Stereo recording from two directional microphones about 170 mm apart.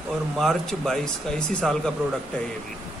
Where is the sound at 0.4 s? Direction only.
Centre (ahead or behind).